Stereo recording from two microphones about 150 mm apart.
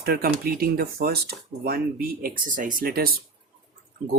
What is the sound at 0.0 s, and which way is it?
Speech, 90° right.